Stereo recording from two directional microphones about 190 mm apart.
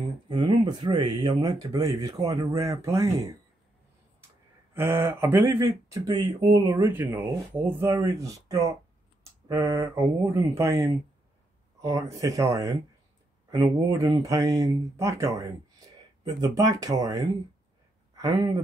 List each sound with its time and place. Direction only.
0.3 s speech: 25° right (ahead or behind)
4.7 s speech: 10° right (ahead or behind)